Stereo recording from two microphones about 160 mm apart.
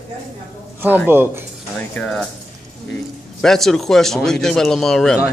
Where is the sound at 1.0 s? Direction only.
15° right (ahead or behind).